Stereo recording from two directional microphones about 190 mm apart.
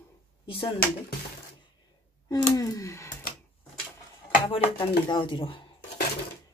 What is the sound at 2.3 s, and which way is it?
Speech, 20° left (ahead or behind).